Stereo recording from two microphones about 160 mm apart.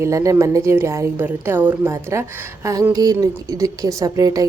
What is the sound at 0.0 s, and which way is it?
A woman's voice, 20° right (ahead or behind).